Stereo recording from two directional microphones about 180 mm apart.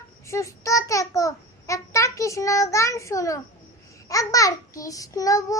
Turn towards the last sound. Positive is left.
turn(degrees=20)  # may be behind; listen again after turning